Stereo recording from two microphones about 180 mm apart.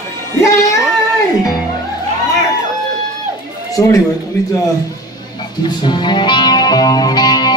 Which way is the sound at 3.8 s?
20° left (ahead or behind).